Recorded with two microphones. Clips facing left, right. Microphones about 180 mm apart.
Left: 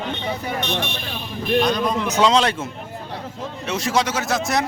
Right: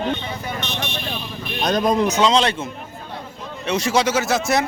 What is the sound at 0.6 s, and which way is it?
Speech, 55° left (ahead or behind).